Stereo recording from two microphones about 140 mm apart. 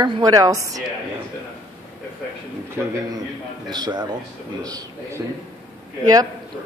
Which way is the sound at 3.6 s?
30° right (ahead or behind).